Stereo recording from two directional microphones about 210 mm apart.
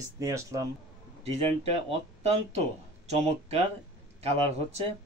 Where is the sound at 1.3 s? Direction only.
30° right (ahead or behind).